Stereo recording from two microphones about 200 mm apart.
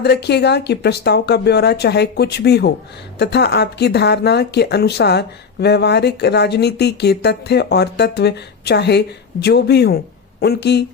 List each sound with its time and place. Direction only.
0.0 s speech: 55° left (ahead or behind)